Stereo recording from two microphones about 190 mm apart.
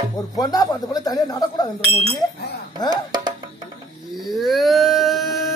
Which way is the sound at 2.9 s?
20° right (ahead or behind).